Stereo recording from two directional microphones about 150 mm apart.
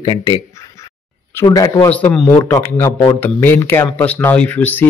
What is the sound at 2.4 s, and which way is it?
Speech, 20° left (ahead or behind).